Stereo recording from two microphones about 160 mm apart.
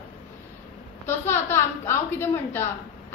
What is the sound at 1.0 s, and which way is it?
A woman's voice, 15° left (ahead or behind).